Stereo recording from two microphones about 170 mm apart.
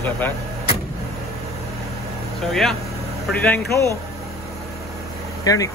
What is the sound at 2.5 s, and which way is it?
Speech, centre (ahead or behind).